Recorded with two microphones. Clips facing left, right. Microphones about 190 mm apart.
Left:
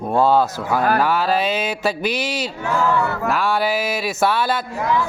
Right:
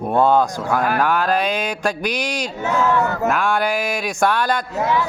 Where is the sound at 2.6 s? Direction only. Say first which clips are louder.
Right 1 dB; 20° right (ahead or behind).